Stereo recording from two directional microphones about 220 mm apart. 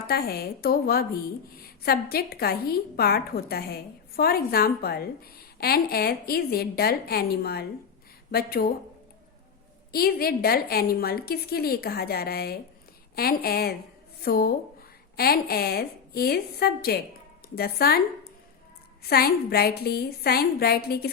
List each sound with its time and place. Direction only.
0.1 s a woman's voice: 45° left (ahead or behind)
9.9 s a woman's voice: 45° left (ahead or behind)
19.0 s a woman's voice: 45° left (ahead or behind)